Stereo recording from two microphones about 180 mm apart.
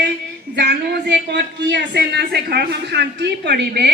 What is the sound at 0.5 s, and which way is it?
A man's voice, 70° right (ahead or behind).